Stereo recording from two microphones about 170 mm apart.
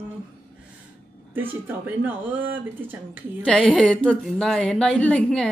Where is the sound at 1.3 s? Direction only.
10° right (ahead or behind).